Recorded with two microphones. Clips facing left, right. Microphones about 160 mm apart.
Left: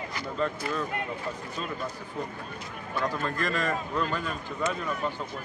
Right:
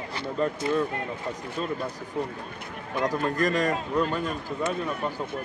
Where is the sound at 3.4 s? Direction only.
40° right (ahead or behind).